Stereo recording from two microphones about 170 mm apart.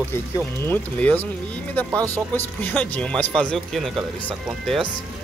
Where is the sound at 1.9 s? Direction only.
15° right (ahead or behind).